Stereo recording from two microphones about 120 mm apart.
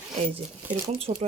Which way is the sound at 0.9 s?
50° right (ahead or behind).